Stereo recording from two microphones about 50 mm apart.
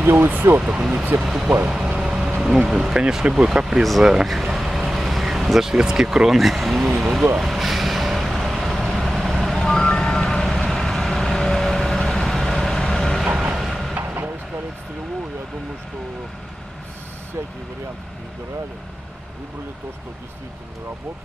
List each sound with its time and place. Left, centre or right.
0.0 s speech: right
0.7 s speech: centre
1.7 s a sound: centre
2.7 s speech: centre
7.3 s vehicle: centre
9.6 s vehicle: centre
13.4 s vehicle: centre
13.9 s vehicle: right